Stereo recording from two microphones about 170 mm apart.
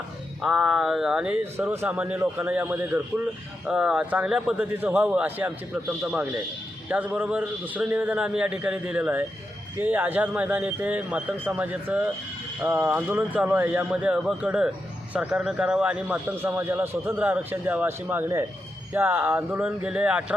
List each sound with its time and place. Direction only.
0.4 s a man's voice: 5° right (ahead or behind)